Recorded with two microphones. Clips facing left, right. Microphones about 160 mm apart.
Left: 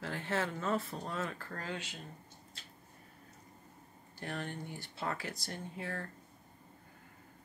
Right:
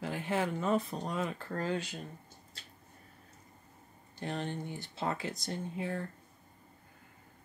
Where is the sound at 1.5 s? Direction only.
30° right (ahead or behind).